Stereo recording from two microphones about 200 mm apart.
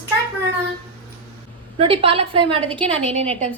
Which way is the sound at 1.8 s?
25° right (ahead or behind).